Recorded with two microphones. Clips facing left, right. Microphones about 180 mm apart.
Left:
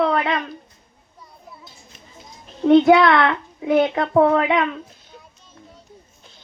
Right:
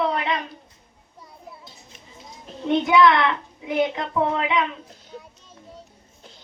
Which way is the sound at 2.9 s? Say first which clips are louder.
Left 3 dB; 60° left (ahead or behind).